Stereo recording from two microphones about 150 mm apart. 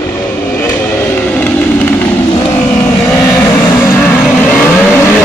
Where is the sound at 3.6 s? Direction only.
15° left (ahead or behind).